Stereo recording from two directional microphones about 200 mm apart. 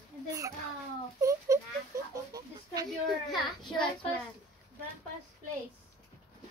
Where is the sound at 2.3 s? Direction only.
20° right (ahead or behind).